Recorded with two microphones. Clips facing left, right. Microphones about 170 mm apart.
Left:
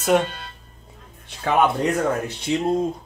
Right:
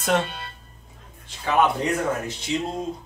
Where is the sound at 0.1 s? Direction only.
10° left (ahead or behind).